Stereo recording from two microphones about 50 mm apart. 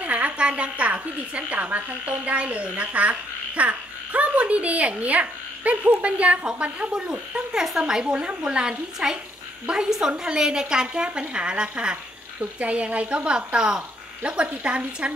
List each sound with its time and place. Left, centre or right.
0.0 s a woman's voice: right